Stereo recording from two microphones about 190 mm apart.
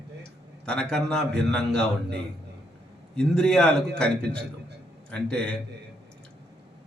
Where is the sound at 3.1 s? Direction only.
5° left (ahead or behind).